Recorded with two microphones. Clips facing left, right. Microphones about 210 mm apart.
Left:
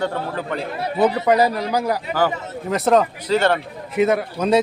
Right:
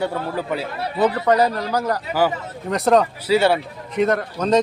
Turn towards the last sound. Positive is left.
turn(degrees=10)  # may be behind; listen again after turning